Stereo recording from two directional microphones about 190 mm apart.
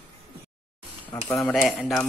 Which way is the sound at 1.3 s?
15° left (ahead or behind).